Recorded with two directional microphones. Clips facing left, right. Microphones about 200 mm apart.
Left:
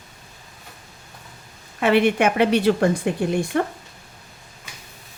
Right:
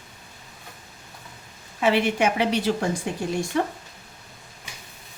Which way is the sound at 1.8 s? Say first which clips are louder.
Left 4 dB; 60° left (ahead or behind).